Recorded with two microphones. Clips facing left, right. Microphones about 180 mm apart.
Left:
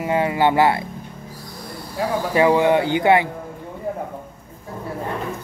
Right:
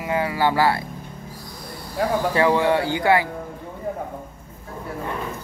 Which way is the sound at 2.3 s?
15° left (ahead or behind).